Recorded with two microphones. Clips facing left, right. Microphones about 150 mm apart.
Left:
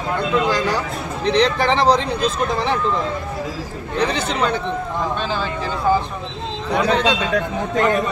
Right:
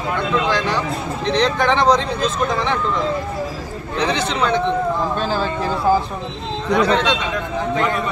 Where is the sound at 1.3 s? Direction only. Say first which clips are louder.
Even; 35° left (ahead or behind).